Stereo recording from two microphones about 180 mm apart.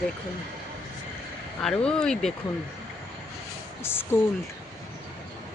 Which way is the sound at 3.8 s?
15° left (ahead or behind).